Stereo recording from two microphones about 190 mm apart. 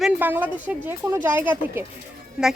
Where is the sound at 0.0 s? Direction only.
10° right (ahead or behind).